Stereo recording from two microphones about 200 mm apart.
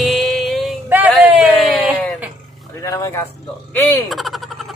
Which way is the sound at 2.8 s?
15° left (ahead or behind).